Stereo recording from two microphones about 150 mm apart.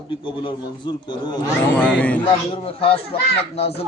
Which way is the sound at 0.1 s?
35° left (ahead or behind).